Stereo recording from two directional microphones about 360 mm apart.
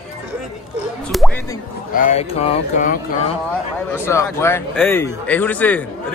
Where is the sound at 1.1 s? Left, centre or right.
Centre.